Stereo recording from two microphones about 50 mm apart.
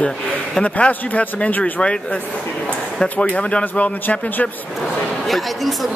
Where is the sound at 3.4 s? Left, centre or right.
Left.